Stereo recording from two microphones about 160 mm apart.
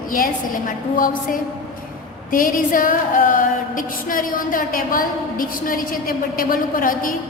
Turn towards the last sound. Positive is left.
turn(degrees=60)  # may be behind; listen again after turning